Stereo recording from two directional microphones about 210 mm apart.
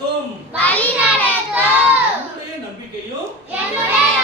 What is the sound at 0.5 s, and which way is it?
Child singing, 5° left (ahead or behind).